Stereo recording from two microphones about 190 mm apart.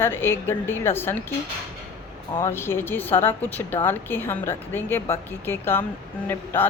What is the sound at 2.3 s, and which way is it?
A woman's voice, 10° left (ahead or behind).